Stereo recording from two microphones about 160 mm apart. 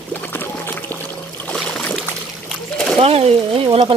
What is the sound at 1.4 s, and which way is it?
Splash, 5° left (ahead or behind).